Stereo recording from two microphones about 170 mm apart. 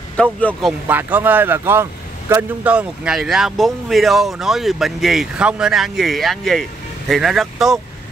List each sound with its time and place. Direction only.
0.1 s a man's voice: 10° left (ahead or behind)
0.8 s speech: 10° right (ahead or behind)